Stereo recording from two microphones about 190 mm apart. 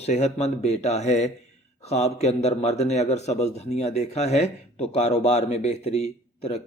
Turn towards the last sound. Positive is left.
turn(degrees=35)  # may be behind; listen again after turning